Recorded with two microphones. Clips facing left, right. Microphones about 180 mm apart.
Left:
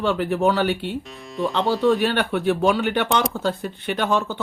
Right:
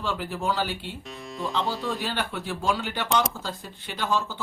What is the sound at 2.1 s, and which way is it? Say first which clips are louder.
Speech: left 10 dB; 65° left (ahead or behind).